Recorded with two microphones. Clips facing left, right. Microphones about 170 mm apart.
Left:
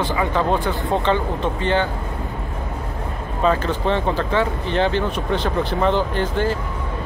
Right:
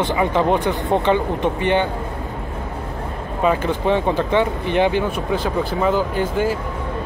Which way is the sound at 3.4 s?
15° right (ahead or behind).